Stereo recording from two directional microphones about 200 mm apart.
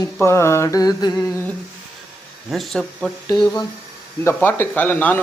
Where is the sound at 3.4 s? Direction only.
20° left (ahead or behind).